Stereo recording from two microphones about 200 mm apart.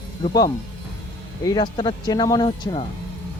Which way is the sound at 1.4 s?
20° left (ahead or behind).